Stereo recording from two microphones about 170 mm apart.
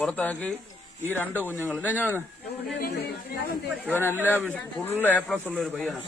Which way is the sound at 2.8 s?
70° left (ahead or behind).